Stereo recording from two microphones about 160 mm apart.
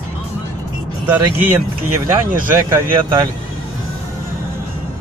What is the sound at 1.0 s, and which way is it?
Speech, 10° right (ahead or behind).